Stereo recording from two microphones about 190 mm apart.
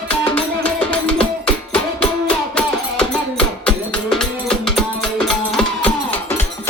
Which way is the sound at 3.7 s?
5° left (ahead or behind).